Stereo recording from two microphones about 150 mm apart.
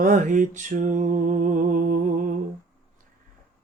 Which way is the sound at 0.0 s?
60° right (ahead or behind).